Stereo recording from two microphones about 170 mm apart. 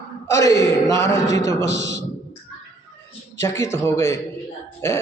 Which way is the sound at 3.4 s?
15° left (ahead or behind).